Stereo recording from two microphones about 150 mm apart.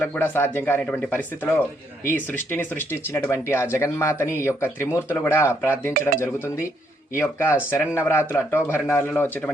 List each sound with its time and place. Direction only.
0.0 s speech: 15° left (ahead or behind)